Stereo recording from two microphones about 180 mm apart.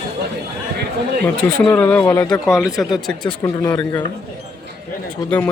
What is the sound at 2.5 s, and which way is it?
Speech, 5° right (ahead or behind).